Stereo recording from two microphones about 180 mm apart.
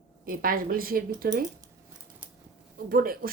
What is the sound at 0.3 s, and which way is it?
A woman's voice, 50° right (ahead or behind).